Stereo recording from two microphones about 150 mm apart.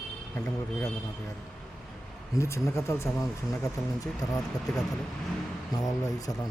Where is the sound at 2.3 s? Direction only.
20° left (ahead or behind).